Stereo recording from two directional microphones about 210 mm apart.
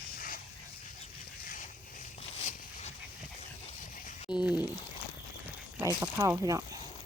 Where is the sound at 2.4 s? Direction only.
30° left (ahead or behind).